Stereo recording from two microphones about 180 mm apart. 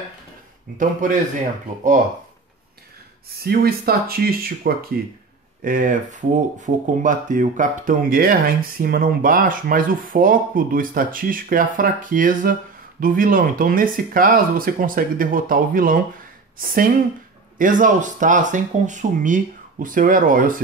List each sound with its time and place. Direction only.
1.0 s speech: 45° right (ahead or behind)
3.3 s speech: 60° right (ahead or behind)